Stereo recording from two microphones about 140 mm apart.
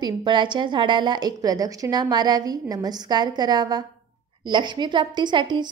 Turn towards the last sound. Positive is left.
turn(degrees=-35)  # may be behind; listen again after turning